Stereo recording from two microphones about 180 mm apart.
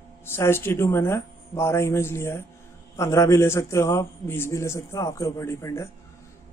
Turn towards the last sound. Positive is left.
turn(degrees=15)  # may be behind; listen again after turning